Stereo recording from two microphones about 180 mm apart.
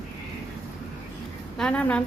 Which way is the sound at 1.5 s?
5° left (ahead or behind).